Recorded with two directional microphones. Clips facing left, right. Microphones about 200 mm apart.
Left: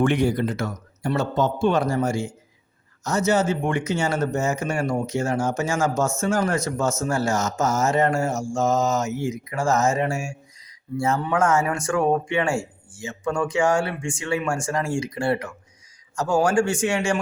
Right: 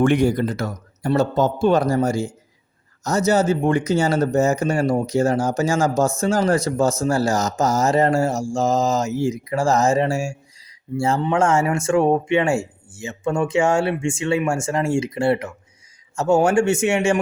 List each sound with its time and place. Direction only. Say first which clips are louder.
0.0 s a man's voice: right 3 dB; 45° right (ahead or behind); by 17.2 s 25° right (ahead or behind)